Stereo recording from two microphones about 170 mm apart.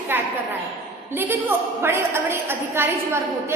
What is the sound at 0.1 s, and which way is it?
A woman's voice, 10° right (ahead or behind).